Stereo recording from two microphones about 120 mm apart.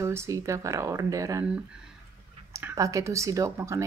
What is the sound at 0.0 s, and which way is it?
Speech, 25° right (ahead or behind).